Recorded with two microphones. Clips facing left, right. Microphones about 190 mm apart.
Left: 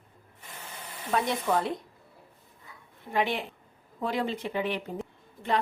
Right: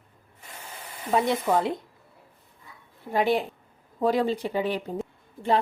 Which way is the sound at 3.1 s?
40° right (ahead or behind).